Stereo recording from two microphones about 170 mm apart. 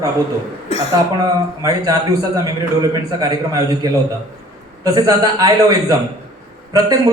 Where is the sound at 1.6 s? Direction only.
20° right (ahead or behind).